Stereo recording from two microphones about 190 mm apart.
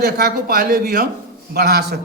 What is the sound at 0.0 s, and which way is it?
A man's voice, 50° right (ahead or behind).